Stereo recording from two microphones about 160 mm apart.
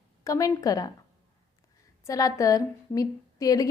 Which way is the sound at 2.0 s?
20° left (ahead or behind).